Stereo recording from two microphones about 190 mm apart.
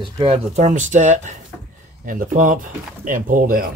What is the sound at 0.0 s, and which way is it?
Speech, 30° right (ahead or behind).